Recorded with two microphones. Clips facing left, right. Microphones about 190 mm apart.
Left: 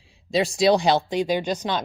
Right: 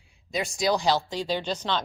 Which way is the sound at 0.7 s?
20° left (ahead or behind).